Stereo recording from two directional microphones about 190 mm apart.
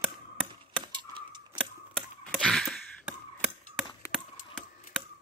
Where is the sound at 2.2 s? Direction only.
5° left (ahead or behind).